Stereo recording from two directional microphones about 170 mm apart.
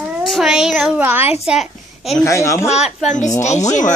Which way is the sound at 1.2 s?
40° left (ahead or behind).